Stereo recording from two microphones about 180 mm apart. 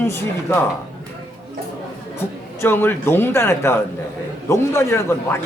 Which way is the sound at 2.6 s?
10° left (ahead or behind).